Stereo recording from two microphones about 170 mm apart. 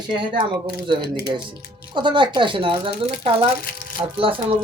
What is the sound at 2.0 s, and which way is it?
Speech, 30° right (ahead or behind).